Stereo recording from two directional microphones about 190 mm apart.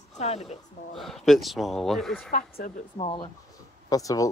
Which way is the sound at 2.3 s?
45° left (ahead or behind).